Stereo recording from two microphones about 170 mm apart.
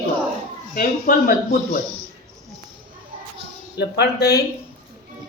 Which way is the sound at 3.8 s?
70° left (ahead or behind).